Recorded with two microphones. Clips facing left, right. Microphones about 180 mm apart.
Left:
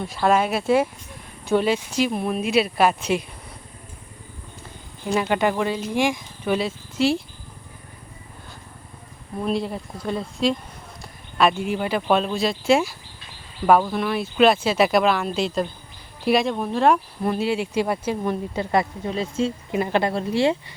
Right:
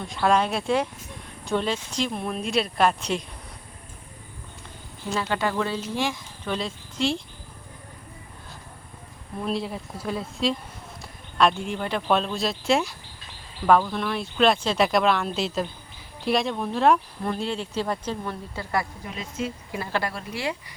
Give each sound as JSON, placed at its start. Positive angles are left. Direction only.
{"t": 0.1, "sound": "speech", "side_deg": 5}
{"t": 5.1, "sound": "speech", "side_deg": 15}
{"t": 9.4, "sound": "speech", "side_deg": 0}